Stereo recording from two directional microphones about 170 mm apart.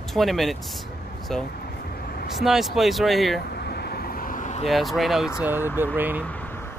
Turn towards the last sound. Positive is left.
turn(degrees=-10)  # may be behind; listen again after turning